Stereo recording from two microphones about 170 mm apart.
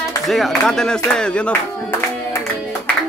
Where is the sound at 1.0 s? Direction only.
5° left (ahead or behind).